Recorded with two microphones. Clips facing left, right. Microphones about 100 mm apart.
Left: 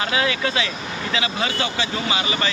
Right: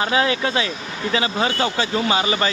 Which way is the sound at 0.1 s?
35° right (ahead or behind).